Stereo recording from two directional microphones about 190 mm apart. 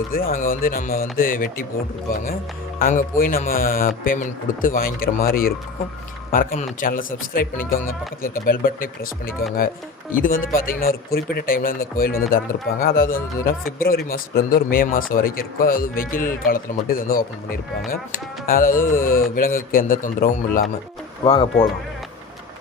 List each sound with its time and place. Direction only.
0.1 s speech: 50° left (ahead or behind)
2.7 s speech: 45° left (ahead or behind)
10.1 s speech: 45° left (ahead or behind)